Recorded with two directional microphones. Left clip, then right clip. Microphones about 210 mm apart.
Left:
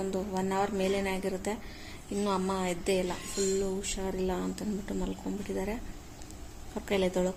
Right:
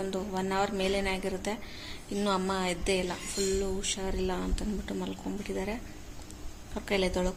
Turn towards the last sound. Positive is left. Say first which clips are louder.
# even
turn(degrees=10)  # may be behind; listen again after turning